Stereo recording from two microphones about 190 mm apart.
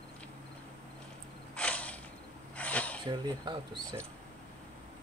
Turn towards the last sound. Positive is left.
turn(degrees=-20)  # may be behind; listen again after turning